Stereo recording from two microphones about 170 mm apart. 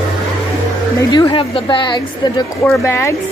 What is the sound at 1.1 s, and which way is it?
Speech, 30° left (ahead or behind).